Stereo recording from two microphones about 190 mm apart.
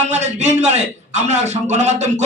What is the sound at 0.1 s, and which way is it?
A man's voice, 35° right (ahead or behind).